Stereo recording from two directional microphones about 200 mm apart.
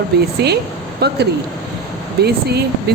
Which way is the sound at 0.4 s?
55° right (ahead or behind).